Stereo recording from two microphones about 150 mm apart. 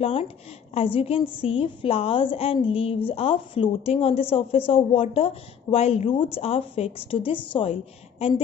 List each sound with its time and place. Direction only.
0.0 s a woman's voice: 40° left (ahead or behind)